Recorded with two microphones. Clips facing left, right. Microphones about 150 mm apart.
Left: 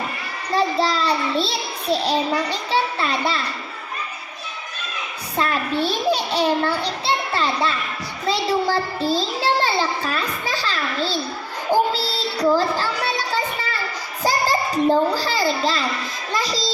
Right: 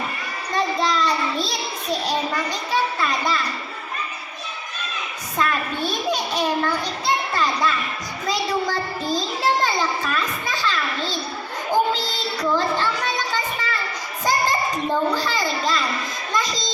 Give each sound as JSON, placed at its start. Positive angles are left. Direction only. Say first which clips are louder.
{"t": 0.5, "sound": "a child's voice", "louder": "left 2 dB", "side_deg": 35}
{"t": 5.4, "sound": "a child's voice", "louder": "left 2 dB", "side_deg": 30}